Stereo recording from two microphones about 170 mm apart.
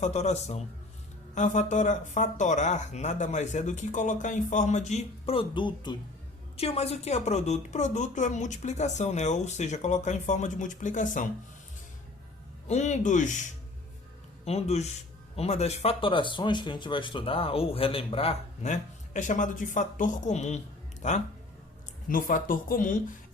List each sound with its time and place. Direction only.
0.0 s speech: 40° left (ahead or behind)
6.6 s speech: 35° left (ahead or behind)
12.6 s speech: 40° left (ahead or behind)
14.4 s speech: 40° left (ahead or behind)
22.1 s speech: 55° left (ahead or behind)